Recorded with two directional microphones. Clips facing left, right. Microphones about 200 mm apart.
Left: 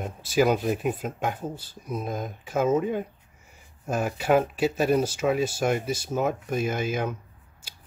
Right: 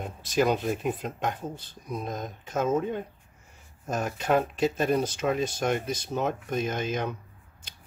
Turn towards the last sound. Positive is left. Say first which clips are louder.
# left 2 dB
turn(degrees=5)  # may be behind; listen again after turning